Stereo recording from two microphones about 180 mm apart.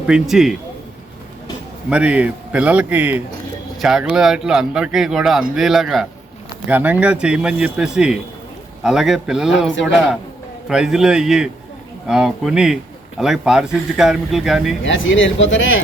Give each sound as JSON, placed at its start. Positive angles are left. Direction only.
{"t": 0.1, "sound": "a man's voice", "side_deg": 0}
{"t": 1.9, "sound": "a man's voice", "side_deg": -5}
{"t": 14.8, "sound": "speech", "side_deg": 90}